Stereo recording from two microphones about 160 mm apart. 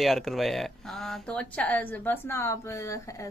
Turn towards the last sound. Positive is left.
turn(degrees=20)  # may be behind; listen again after turning